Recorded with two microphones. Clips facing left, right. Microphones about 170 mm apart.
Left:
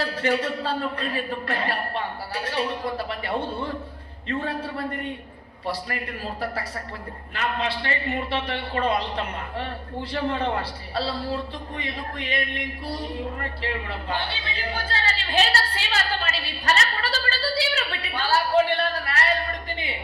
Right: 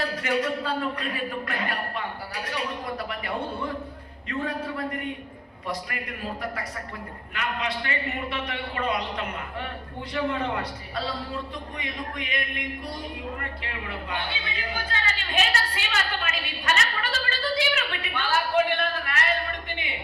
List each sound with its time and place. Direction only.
0.2 s a man's voice: 30° left (ahead or behind)
7.3 s a man's voice: 30° left (ahead or behind)
13.4 s a sound: 35° left (ahead or behind)